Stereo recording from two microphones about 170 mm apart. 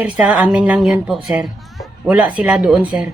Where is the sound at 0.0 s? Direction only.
5° right (ahead or behind).